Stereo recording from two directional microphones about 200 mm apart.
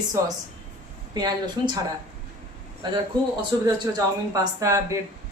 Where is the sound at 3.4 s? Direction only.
20° right (ahead or behind).